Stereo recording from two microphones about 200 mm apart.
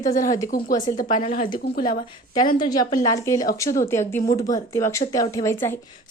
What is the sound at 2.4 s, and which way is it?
A woman's voice, 20° left (ahead or behind).